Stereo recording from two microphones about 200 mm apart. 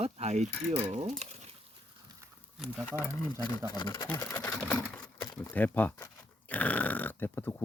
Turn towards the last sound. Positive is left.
turn(degrees=10)  # may be behind; listen again after turning